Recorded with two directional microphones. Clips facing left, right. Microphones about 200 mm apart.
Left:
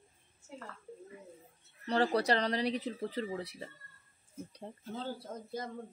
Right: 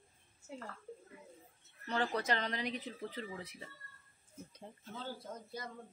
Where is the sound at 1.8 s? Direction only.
35° left (ahead or behind).